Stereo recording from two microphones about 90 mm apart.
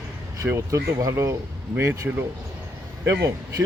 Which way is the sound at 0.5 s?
35° right (ahead or behind).